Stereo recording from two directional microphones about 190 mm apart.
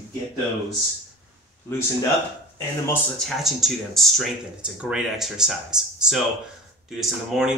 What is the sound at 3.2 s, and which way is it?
A man's voice, centre (ahead or behind).